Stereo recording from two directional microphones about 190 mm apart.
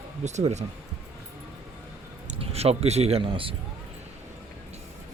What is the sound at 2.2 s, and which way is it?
Speech, 35° right (ahead or behind).